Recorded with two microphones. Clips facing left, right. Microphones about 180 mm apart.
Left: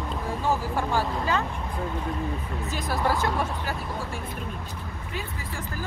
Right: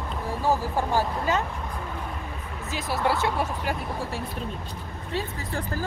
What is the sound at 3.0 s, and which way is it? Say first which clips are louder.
Speech: right 1 dB; 10° right (ahead or behind).